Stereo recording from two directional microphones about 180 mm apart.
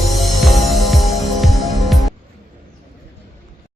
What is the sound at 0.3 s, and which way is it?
Music, centre (ahead or behind).